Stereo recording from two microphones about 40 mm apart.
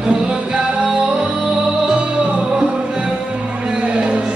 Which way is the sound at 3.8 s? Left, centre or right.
Right.